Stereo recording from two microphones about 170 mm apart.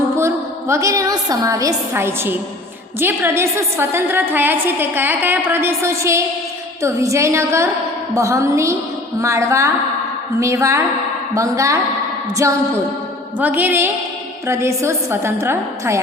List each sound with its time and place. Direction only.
0.2 s a woman's voice: 15° right (ahead or behind)